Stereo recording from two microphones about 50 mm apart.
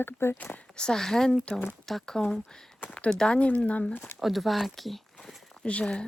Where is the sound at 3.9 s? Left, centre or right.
Left.